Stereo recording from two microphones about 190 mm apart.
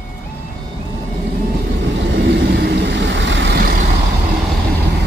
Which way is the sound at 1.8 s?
65° right (ahead or behind).